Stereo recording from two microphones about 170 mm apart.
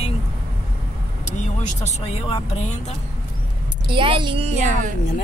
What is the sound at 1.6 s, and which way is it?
Speech, 40° left (ahead or behind).